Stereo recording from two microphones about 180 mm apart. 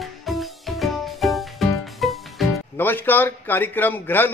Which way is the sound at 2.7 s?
10° left (ahead or behind).